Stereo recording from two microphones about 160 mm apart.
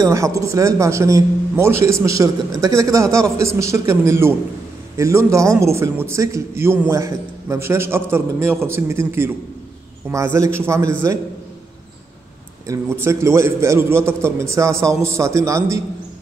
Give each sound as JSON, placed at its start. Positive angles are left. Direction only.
{"t": 0.0, "sound": "a man's voice", "side_deg": -20}
{"t": 12.6, "sound": "a man's voice", "side_deg": -20}